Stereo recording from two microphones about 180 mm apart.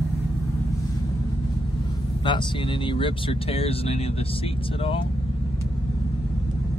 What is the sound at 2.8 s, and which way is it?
Speech, 30° left (ahead or behind).